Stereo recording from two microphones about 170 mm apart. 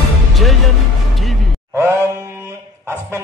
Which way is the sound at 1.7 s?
15° right (ahead or behind).